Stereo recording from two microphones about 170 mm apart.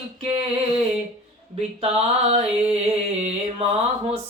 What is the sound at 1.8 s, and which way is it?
Singing, 35° right (ahead or behind).